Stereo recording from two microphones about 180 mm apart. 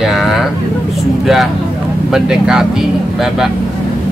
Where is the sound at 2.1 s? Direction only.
5° right (ahead or behind).